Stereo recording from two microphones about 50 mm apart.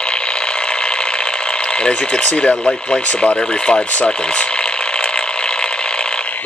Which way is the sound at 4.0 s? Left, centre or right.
Centre.